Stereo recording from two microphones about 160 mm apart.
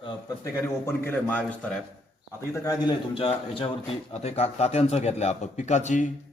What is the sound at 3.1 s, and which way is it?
Speech, 35° left (ahead or behind).